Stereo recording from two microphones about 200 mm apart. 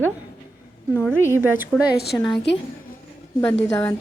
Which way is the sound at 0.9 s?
10° right (ahead or behind).